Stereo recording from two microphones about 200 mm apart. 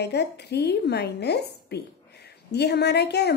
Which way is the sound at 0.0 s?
55° left (ahead or behind).